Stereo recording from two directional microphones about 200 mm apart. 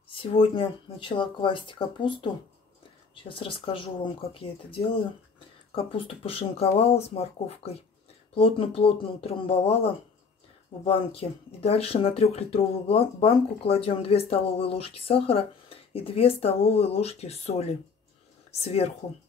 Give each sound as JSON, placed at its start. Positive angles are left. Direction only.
{"t": 0.1, "sound": "speech", "side_deg": 25}